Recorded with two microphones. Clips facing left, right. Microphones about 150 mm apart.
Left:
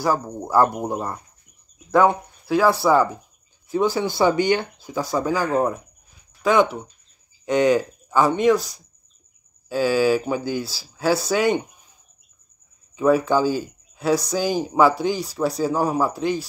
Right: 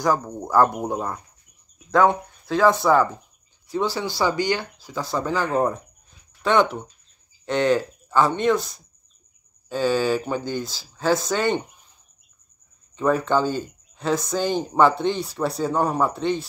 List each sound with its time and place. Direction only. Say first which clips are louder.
0.0 s a man's voice: even; 10° left (ahead or behind)
5.1 s a man's voice: left 2 dB; 10° left (ahead or behind)
9.7 s speech: left 3 dB; 10° left (ahead or behind)
12.9 s a man's voice: left 3 dB; 10° left (ahead or behind)